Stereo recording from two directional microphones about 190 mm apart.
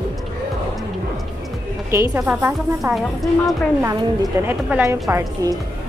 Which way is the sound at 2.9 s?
Centre (ahead or behind).